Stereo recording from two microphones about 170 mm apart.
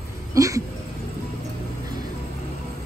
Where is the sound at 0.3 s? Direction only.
20° right (ahead or behind).